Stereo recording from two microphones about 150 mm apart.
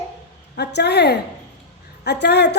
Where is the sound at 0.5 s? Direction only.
90° left.